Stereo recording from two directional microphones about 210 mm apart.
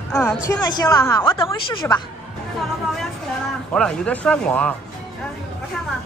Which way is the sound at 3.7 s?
5° left (ahead or behind).